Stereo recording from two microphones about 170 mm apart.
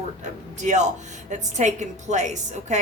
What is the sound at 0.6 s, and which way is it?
Speech, 45° right (ahead or behind).